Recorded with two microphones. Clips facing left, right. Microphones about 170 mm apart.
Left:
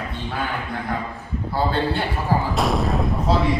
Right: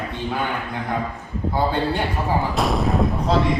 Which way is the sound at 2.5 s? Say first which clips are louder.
Right 1 dB; centre (ahead or behind).